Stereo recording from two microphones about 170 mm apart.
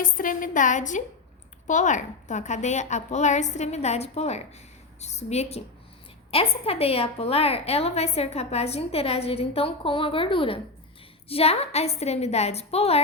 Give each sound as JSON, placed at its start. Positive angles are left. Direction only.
{"t": 0.0, "sound": "a woman's voice", "side_deg": 55}